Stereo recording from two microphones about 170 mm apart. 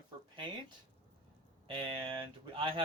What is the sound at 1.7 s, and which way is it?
A man's voice, 30° right (ahead or behind).